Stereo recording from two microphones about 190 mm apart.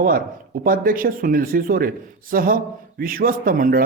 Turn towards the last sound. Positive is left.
turn(degrees=-50)  # may be behind; listen again after turning